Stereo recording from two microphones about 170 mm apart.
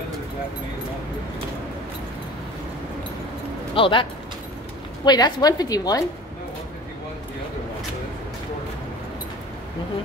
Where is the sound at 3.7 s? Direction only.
30° left (ahead or behind).